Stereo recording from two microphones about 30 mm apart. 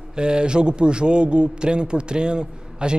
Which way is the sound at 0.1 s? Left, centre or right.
Right.